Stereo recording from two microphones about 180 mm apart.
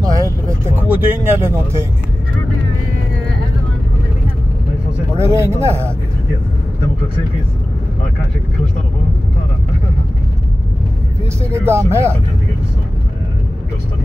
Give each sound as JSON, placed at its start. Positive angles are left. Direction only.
{"t": 0.0, "sound": "vehicle", "side_deg": -20}
{"t": 0.8, "sound": "speech", "side_deg": -10}
{"t": 5.3, "sound": "speech", "side_deg": -15}
{"t": 11.5, "sound": "speech", "side_deg": -15}